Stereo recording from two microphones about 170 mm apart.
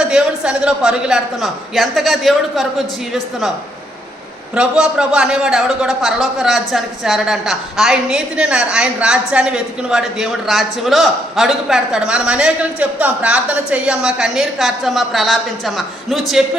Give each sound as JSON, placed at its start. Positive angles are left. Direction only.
{"t": 0.0, "sound": "a man's voice", "side_deg": -5}
{"t": 4.5, "sound": "a man's voice", "side_deg": -5}